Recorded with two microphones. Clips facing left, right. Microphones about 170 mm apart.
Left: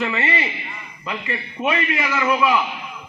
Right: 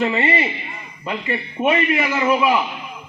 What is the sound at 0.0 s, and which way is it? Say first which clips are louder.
A man's voice: right 4 dB; 30° right (ahead or behind).